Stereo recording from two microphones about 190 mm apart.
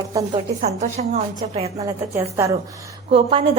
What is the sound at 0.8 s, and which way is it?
Speech, 40° right (ahead or behind).